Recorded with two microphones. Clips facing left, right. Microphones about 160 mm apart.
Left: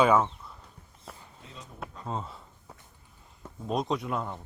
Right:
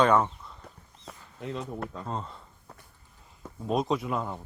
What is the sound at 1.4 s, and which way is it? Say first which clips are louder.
Speech: right 14 dB; 70° right (ahead or behind).